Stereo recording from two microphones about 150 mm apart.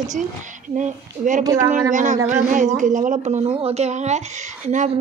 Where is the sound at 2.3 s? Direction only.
55° right (ahead or behind).